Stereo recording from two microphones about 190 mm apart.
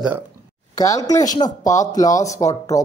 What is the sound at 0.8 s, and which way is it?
Speech, 20° left (ahead or behind).